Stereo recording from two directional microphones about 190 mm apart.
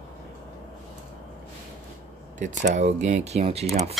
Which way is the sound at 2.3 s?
40° right (ahead or behind).